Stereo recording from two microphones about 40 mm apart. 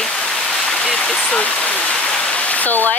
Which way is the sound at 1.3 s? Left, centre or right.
Left.